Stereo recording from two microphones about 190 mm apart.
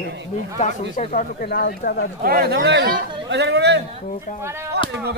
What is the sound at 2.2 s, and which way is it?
A man's voice, 55° right (ahead or behind).